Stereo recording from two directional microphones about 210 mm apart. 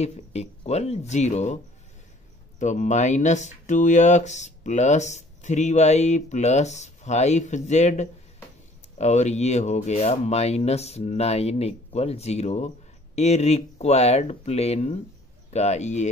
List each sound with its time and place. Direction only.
0.0 s speech: 30° left (ahead or behind)
2.6 s speech: 35° left (ahead or behind)